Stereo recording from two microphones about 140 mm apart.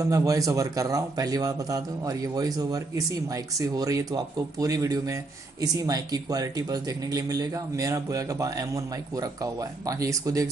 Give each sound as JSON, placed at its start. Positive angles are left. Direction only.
{"t": 0.0, "sound": "speech", "side_deg": -25}